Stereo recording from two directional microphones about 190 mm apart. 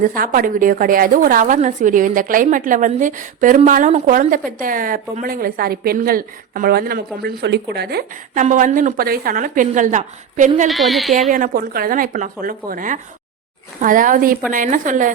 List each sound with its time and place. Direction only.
0.0 s a woman's voice: 50° right (ahead or behind)
8.4 s a woman's voice: 45° right (ahead or behind)
10.7 s a woman's voice: centre (ahead or behind)
11.3 s a woman's voice: 45° right (ahead or behind)